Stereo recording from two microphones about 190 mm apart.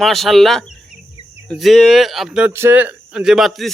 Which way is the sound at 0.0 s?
Centre (ahead or behind).